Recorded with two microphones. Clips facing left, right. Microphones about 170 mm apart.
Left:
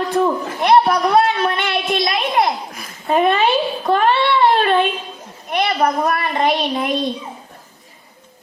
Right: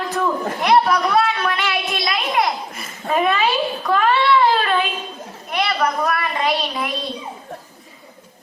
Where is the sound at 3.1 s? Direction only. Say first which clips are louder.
Left 3 dB; 30° left (ahead or behind).